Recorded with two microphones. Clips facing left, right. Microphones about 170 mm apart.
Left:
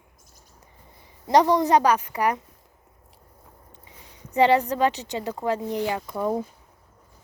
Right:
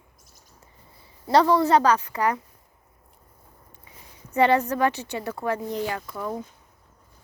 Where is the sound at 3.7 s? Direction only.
20° left (ahead or behind).